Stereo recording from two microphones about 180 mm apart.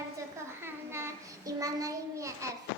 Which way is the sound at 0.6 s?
15° right (ahead or behind).